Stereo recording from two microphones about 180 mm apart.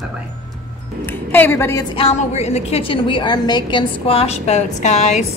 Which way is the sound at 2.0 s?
35° left (ahead or behind).